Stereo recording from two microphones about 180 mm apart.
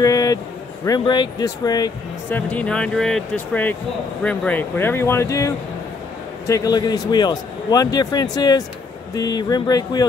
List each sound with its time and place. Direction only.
0.0 s a sound: 20° left (ahead or behind)
0.8 s a man's voice: 20° left (ahead or behind)
2.3 s a man's voice: 5° left (ahead or behind)